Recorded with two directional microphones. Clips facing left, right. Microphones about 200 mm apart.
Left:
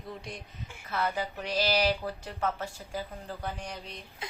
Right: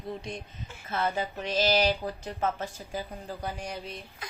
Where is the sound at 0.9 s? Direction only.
25° right (ahead or behind); by 4.0 s 5° right (ahead or behind).